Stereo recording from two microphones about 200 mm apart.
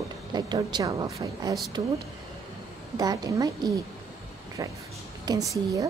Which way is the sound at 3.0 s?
20° right (ahead or behind).